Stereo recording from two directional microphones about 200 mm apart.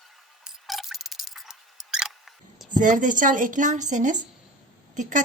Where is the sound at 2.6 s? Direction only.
40° right (ahead or behind).